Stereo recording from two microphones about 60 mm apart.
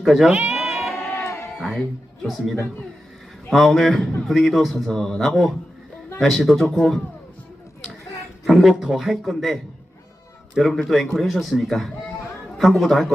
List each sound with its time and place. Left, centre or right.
0.0 s speech: centre
0.3 s speech: centre
0.5 s cat: centre
0.9 s a sound: left
2.2 s a man's voice: centre
8.4 s a man's voice: centre